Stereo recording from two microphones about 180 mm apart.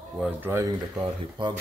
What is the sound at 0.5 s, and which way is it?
Speech, 20° right (ahead or behind).